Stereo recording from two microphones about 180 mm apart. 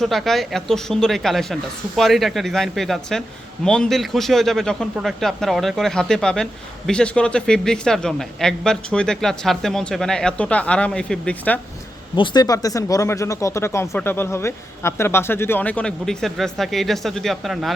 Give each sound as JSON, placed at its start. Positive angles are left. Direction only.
{"t": 0.0, "sound": "a man's voice", "side_deg": 0}
{"t": 12.1, "sound": "speech", "side_deg": 25}